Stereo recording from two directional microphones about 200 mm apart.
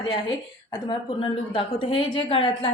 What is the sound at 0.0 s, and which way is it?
A woman's voice, 25° left (ahead or behind).